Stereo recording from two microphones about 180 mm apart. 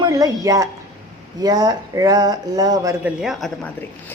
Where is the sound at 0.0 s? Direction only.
20° right (ahead or behind).